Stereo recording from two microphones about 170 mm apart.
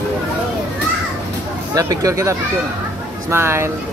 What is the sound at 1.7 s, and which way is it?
Speech, 20° right (ahead or behind).